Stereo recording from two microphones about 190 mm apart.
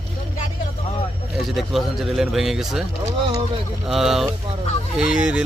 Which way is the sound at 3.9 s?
Centre (ahead or behind).